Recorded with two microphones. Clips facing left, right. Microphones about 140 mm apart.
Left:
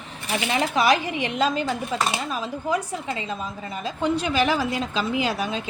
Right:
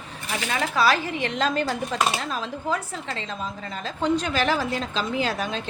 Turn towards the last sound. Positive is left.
turn(degrees=10)  # may be behind; listen again after turning